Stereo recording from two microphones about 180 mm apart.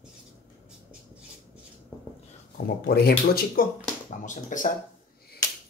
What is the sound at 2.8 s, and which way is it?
Speech, 60° left (ahead or behind).